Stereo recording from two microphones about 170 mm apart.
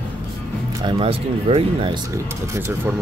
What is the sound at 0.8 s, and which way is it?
Speech, 30° right (ahead or behind).